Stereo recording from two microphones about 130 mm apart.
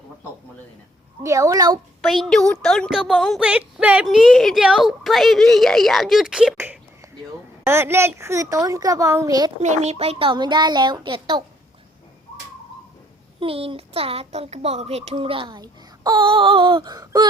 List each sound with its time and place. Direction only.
1.2 s a woman's voice: 25° right (ahead or behind)
2.0 s a woman's voice: centre (ahead or behind)
3.4 s a woman's voice: 10° right (ahead or behind)
6.6 s a sound: 15° right (ahead or behind)
7.6 s a woman's voice: 20° right (ahead or behind)
9.6 s speech: 60° right (ahead or behind); by 11.4 s 35° right (ahead or behind)
13.4 s speech: 45° right (ahead or behind); by 17.2 s 30° right (ahead or behind)